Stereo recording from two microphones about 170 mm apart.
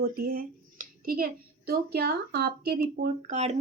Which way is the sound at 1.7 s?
70° right (ahead or behind).